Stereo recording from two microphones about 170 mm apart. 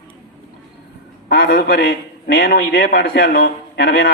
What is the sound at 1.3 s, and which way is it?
A man's voice, 60° left (ahead or behind).